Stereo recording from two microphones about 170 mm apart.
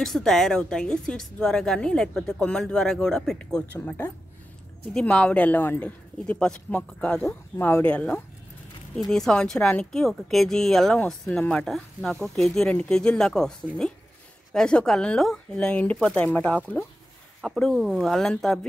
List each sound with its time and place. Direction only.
0.0 s speech: 5° left (ahead or behind)